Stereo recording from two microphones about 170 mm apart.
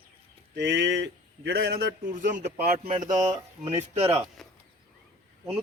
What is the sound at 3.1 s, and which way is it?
Speech, 45° right (ahead or behind).